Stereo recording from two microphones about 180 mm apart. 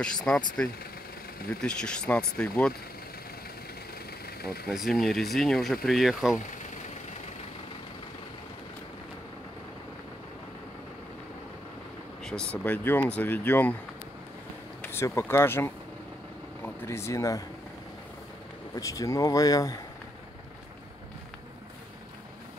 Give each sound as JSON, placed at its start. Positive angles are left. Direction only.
{"t": 0.0, "sound": "speech", "side_deg": 5}
{"t": 1.5, "sound": "speech", "side_deg": 5}
{"t": 4.4, "sound": "speech", "side_deg": 60}
{"t": 4.7, "sound": "speech", "side_deg": 0}
{"t": 12.2, "sound": "speech", "side_deg": 5}
{"t": 14.8, "sound": "speech", "side_deg": 15}
{"t": 18.8, "sound": "speech", "side_deg": 20}